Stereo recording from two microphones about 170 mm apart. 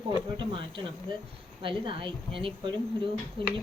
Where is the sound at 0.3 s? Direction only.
30° right (ahead or behind).